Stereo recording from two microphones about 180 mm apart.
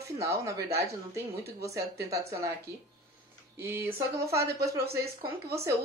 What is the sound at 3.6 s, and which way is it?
Speech, 10° right (ahead or behind).